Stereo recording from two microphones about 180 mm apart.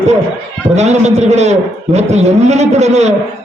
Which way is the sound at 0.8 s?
40° right (ahead or behind).